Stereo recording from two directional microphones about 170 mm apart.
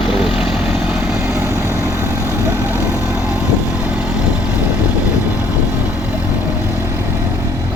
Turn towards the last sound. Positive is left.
turn(degrees=-15)  # may be behind; listen again after turning